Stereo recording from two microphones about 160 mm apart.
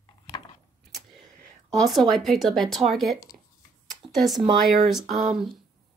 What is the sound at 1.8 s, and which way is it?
Speech, centre (ahead or behind).